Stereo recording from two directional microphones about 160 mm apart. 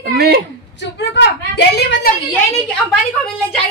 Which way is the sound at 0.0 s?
80° right.